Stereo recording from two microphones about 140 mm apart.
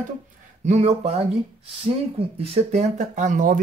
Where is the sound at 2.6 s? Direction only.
50° right (ahead or behind).